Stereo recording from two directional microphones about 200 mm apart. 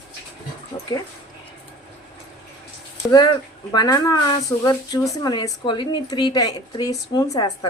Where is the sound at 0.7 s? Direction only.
20° left (ahead or behind).